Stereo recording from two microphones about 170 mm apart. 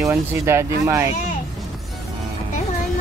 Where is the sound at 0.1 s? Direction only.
15° right (ahead or behind).